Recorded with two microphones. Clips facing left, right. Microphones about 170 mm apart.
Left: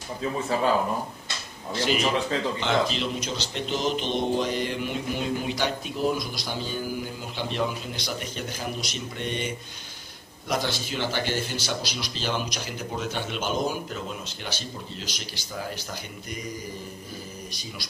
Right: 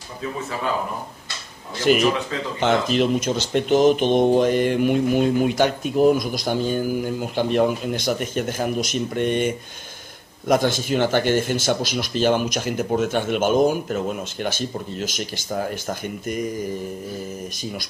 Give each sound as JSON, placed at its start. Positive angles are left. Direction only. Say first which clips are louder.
{"t": 1.9, "sound": "speech", "louder": "right 7 dB", "side_deg": -55}
{"t": 10.5, "sound": "speech", "louder": "right 9 dB", "side_deg": -50}